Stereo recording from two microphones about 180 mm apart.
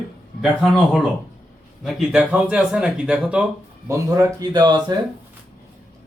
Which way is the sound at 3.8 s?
15° right (ahead or behind).